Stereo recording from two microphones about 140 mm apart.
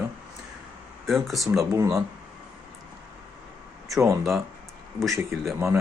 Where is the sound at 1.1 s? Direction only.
Centre (ahead or behind).